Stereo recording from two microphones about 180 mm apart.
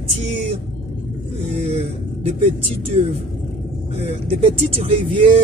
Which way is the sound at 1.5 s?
35° right (ahead or behind).